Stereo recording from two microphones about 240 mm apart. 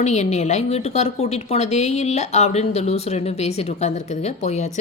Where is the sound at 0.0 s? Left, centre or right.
Left.